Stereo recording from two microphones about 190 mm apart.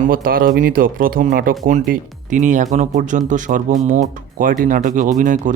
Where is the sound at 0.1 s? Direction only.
50° right (ahead or behind).